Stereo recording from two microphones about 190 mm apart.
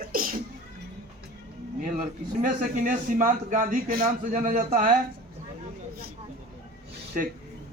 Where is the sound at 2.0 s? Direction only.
45° right (ahead or behind).